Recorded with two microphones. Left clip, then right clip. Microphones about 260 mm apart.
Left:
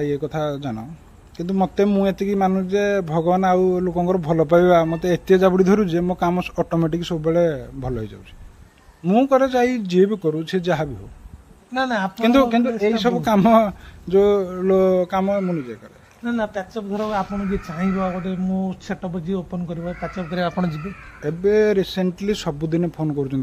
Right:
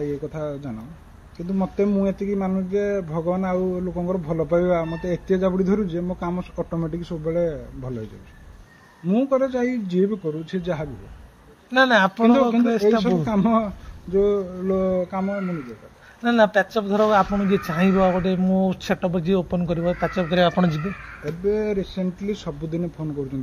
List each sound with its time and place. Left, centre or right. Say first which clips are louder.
0.5 s speech: left 5 dB; left
6.5 s speech: left 6 dB; left
9.0 s speech: left 4 dB; left
11.7 s speech: right 6 dB; centre
12.2 s speech: left 1 dB; left
16.3 s speech: right 7 dB; right
21.5 s speech: left 6 dB; left